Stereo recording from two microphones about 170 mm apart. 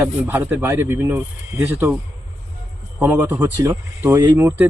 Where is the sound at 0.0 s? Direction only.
10° right (ahead or behind).